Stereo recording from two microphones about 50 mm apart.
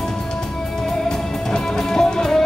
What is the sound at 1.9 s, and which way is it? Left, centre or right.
Music, centre.